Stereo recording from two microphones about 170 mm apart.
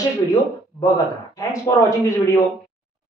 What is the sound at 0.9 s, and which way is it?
Speech, 20° left (ahead or behind).